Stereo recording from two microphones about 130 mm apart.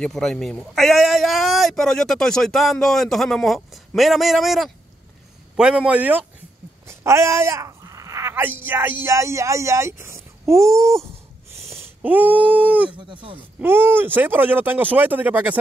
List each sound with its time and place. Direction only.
0.0 s a man's voice: 5° left (ahead or behind); by 11.0 s 25° right (ahead or behind)
12.0 s speech: 15° right (ahead or behind)
12.9 s speech: 40° right (ahead or behind)
13.6 s speech: 15° right (ahead or behind)